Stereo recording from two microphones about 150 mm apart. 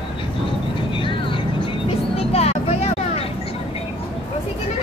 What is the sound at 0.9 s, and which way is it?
Vehicle, 35° left (ahead or behind).